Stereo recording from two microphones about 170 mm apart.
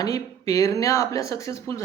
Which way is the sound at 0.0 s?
20° left (ahead or behind).